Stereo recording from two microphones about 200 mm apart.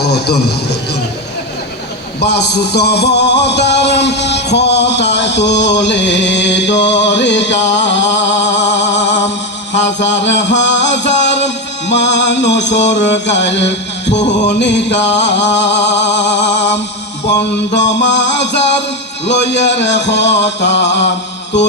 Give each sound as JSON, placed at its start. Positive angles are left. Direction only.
{"t": 0.0, "sound": "a man's voice", "side_deg": 55}
{"t": 2.2, "sound": "music", "side_deg": 55}
{"t": 17.7, "sound": "a sound", "side_deg": 60}